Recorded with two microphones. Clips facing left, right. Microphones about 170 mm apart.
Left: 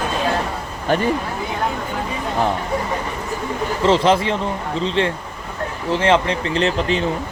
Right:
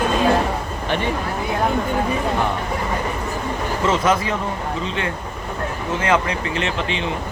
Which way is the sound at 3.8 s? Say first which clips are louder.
Left 4 dB; 30° left (ahead or behind).